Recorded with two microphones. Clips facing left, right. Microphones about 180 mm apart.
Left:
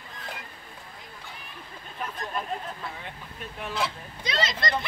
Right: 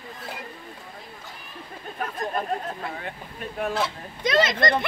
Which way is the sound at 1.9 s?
50° right (ahead or behind).